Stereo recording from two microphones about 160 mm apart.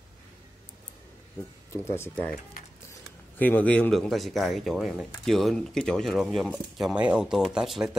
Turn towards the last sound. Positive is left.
turn(degrees=-5)  # may be behind; listen again after turning